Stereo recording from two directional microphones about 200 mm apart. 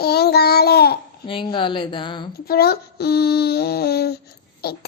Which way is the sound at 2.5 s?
50° left (ahead or behind).